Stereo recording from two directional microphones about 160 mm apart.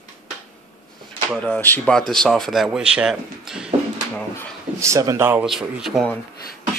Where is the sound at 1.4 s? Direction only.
10° left (ahead or behind).